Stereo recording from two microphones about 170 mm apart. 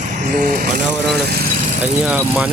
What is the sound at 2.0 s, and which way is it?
Speech, 5° right (ahead or behind).